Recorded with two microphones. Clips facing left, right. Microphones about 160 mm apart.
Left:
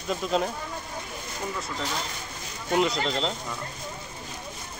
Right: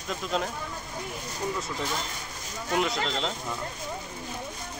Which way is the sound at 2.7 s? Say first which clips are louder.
Left 3 dB; centre (ahead or behind).